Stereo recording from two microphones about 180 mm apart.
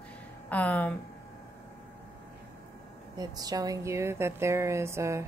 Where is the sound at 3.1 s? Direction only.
20° right (ahead or behind).